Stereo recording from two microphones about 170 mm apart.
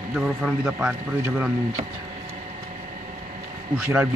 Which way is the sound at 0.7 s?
10° right (ahead or behind).